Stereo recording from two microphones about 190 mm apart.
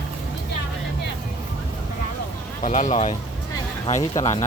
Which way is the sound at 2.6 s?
40° left (ahead or behind).